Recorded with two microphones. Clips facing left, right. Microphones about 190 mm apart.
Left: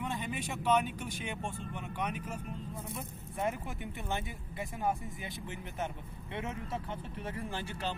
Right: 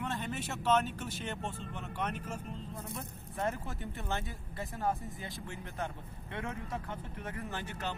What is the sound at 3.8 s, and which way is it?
Speech, 20° left (ahead or behind).